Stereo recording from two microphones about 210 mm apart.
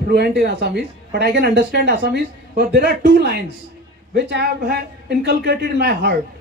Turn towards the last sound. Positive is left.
turn(degrees=-55)  # may be behind; listen again after turning